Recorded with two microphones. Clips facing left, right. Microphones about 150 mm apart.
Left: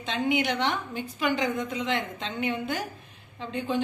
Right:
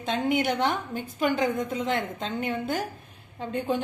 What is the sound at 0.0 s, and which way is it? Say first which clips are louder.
Speech: right 1 dB; 50° right (ahead or behind).